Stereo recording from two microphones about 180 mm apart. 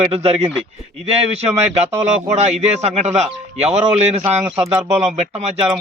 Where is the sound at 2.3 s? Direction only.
35° right (ahead or behind).